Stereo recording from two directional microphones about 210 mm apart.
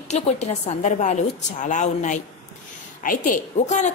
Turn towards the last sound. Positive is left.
turn(degrees=35)  # may be behind; listen again after turning